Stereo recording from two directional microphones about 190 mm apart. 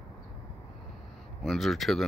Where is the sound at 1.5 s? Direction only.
Centre (ahead or behind).